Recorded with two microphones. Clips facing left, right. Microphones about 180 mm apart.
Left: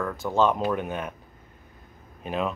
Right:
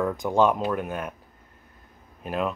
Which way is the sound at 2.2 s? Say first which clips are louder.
Right 1 dB; centre (ahead or behind).